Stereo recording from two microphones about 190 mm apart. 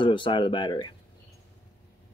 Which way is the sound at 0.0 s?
25° left (ahead or behind).